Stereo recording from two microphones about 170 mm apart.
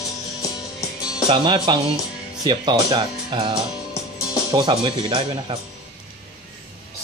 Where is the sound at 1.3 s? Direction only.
30° right (ahead or behind).